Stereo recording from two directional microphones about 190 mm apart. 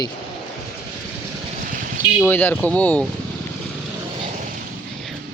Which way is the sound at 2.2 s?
10° left (ahead or behind).